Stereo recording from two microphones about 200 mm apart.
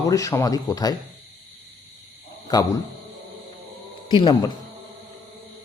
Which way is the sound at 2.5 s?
20° left (ahead or behind).